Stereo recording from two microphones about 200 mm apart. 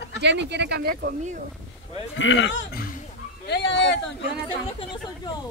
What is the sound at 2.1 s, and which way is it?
Speech, 70° left (ahead or behind).